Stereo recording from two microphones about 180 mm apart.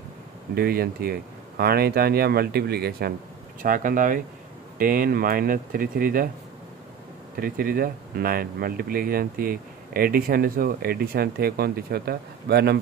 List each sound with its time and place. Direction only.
0.6 s speech: 60° right (ahead or behind)
3.6 s speech: 50° right (ahead or behind)
7.3 s speech: 55° right (ahead or behind)